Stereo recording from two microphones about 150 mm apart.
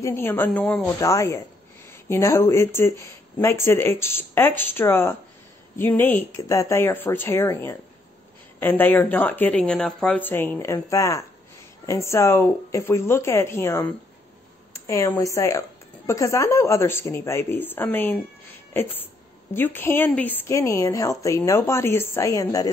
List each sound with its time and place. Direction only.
0.0 s speech: 15° left (ahead or behind)
1.0 s a woman's voice: 20° left (ahead or behind)